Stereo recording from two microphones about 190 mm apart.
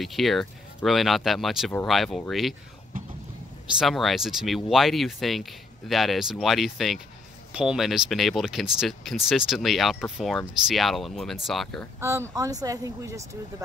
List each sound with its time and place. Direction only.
0.0 s speech: centre (ahead or behind)
3.7 s speech: centre (ahead or behind)
12.0 s speech: 15° right (ahead or behind)